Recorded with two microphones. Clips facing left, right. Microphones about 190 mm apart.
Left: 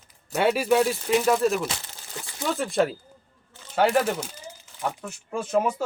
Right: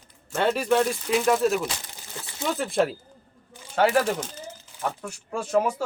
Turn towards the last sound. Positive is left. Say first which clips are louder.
# even
turn(degrees=5)  # may be behind; listen again after turning